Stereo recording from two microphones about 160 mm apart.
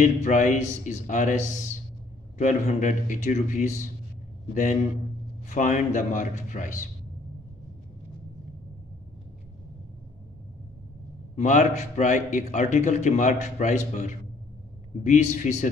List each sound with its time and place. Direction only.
0.0 s a man's voice: 50° left (ahead or behind)
5.5 s a man's voice: 50° left (ahead or behind)
11.3 s a man's voice: 50° left (ahead or behind)